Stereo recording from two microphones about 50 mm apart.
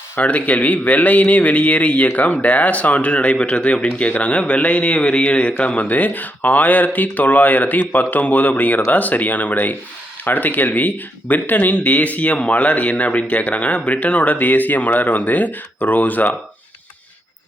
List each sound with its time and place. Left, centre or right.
0.2 s a man's voice: left